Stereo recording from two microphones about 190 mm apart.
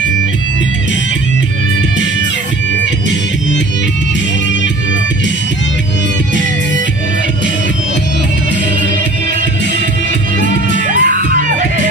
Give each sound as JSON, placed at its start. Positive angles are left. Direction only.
{"t": 10.9, "sound": "music", "side_deg": -45}